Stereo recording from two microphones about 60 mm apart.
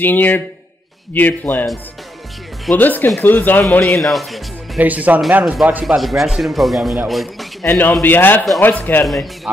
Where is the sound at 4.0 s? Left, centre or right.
Centre.